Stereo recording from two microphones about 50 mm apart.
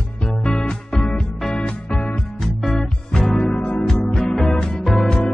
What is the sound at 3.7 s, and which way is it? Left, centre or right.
Music, centre.